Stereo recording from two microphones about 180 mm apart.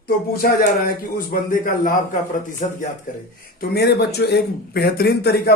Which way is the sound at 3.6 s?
65° left (ahead or behind).